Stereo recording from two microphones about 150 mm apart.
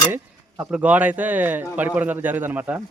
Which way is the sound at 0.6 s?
10° right (ahead or behind).